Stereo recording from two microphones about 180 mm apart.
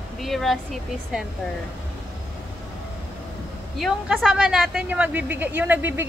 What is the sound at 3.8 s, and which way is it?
A woman's voice, centre (ahead or behind).